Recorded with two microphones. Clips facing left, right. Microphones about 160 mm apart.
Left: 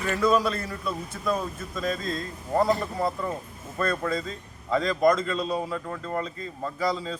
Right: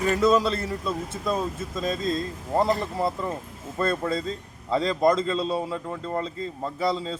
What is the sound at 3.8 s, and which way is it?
A man's voice, 25° right (ahead or behind).